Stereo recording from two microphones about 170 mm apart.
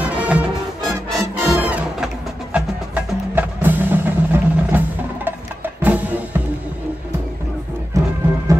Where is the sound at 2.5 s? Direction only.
10° right (ahead or behind).